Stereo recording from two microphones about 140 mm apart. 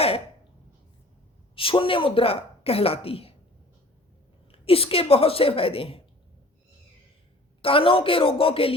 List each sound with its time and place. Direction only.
1.5 s a woman's voice: 40° left (ahead or behind)
4.5 s a woman's voice: 45° left (ahead or behind)
7.6 s a woman's voice: 40° left (ahead or behind)